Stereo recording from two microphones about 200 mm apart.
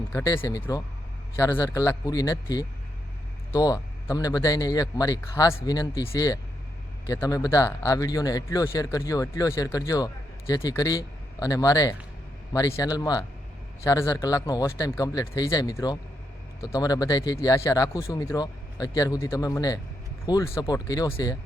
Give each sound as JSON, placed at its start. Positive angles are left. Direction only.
{"t": 0.1, "sound": "speech", "side_deg": 15}